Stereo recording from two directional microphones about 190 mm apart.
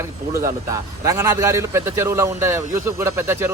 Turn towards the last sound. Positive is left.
turn(degrees=-15)  # may be behind; listen again after turning